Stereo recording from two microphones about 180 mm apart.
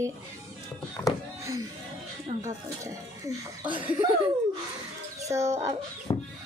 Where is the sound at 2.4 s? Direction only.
15° right (ahead or behind).